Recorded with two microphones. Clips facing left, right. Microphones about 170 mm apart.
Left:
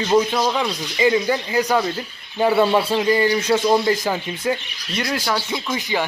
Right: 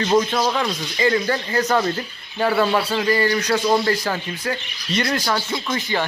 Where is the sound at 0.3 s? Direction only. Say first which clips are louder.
Even; 5° left (ahead or behind).